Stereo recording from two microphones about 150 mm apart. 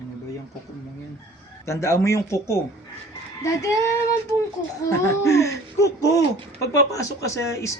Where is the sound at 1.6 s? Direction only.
20° left (ahead or behind).